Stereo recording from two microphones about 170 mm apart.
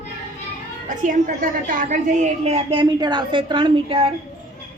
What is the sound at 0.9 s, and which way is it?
A woman's voice, 50° right (ahead or behind).